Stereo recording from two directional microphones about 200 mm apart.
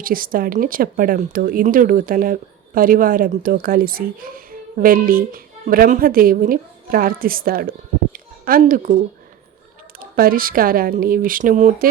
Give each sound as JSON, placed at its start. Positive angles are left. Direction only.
{"t": 0.0, "sound": "speech", "side_deg": -45}
{"t": 10.0, "sound": "speech", "side_deg": -45}